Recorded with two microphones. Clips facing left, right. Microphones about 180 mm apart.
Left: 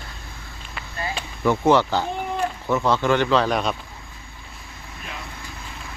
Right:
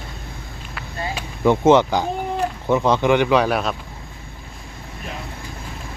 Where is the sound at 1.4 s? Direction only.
20° right (ahead or behind).